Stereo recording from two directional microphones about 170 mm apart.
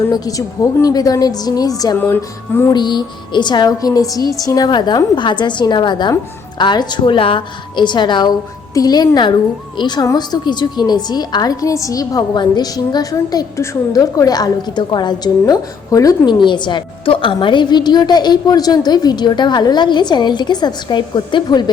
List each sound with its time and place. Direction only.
0.1 s a woman's voice: 20° left (ahead or behind)